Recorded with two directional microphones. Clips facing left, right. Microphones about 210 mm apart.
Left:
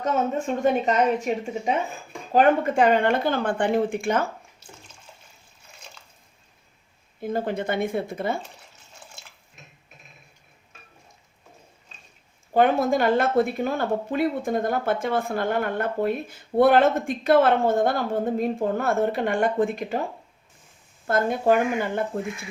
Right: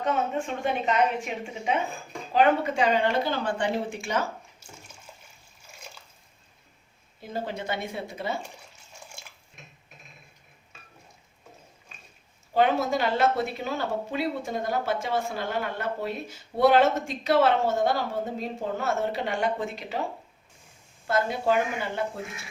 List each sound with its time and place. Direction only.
0.0 s a woman's voice: 40° left (ahead or behind)
4.6 s bathtub: 10° right (ahead or behind)
7.2 s speech: 55° left (ahead or behind)
12.5 s speech: 50° left (ahead or behind)
21.1 s speech: 50° left (ahead or behind)